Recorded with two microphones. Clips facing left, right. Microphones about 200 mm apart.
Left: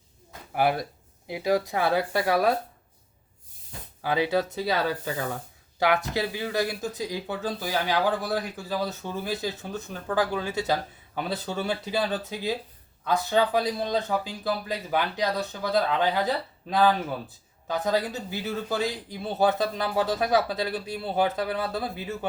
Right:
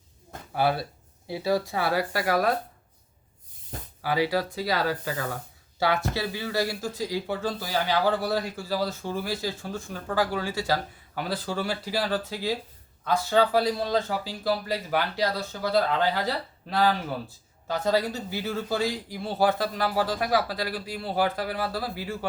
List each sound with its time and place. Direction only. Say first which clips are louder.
0.5 s speech: left 1 dB; 15° left (ahead or behind)
4.0 s speech: left 1 dB; 20° left (ahead or behind)